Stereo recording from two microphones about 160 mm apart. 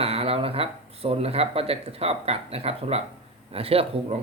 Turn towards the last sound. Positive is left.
turn(degrees=-35)  # may be behind; listen again after turning